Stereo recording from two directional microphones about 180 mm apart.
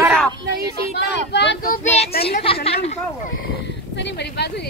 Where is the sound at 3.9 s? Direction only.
75° left (ahead or behind).